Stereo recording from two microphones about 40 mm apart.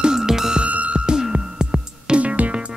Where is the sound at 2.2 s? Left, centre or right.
Right.